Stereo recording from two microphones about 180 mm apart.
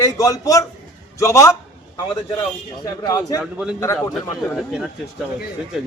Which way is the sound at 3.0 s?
20° left (ahead or behind).